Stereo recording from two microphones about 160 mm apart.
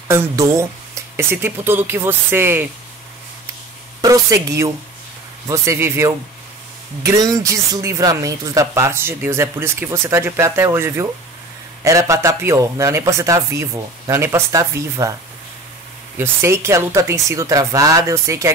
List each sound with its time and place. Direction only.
0.1 s speech: 20° right (ahead or behind)
4.0 s speech: 20° right (ahead or behind)
16.2 s speech: 15° right (ahead or behind)